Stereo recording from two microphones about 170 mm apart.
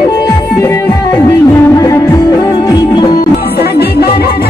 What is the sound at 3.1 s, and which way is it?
Music, 65° left (ahead or behind).